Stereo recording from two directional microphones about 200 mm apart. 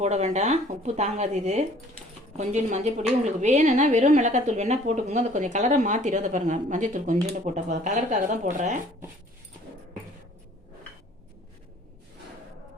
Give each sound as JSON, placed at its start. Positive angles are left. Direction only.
{"t": 0.0, "sound": "a woman's voice", "side_deg": -35}